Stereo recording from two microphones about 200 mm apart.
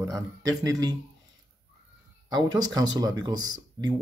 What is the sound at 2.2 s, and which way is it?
Speech, 20° right (ahead or behind).